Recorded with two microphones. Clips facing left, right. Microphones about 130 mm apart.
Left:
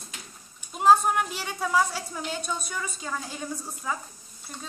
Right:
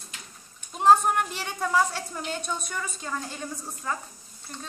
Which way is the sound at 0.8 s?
5° left (ahead or behind).